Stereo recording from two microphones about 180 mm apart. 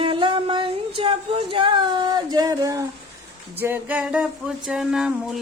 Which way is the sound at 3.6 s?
10° right (ahead or behind).